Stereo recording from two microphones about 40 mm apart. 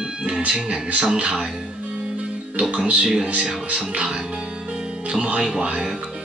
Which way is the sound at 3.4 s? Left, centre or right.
Centre.